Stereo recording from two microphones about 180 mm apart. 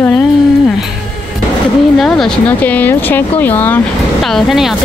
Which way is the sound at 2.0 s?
5° left (ahead or behind).